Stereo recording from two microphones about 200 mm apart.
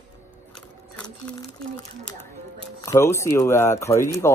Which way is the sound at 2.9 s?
15° left (ahead or behind).